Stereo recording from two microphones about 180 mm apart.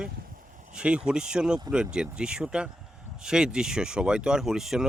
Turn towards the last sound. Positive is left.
turn(degrees=-5)  # may be behind; listen again after turning